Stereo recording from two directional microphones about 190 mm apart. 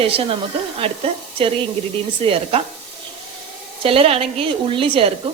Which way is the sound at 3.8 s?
30° right (ahead or behind).